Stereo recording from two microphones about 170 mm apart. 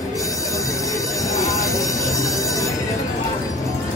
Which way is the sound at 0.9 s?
20° left (ahead or behind).